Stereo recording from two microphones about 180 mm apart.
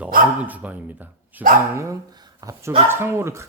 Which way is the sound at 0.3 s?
10° right (ahead or behind).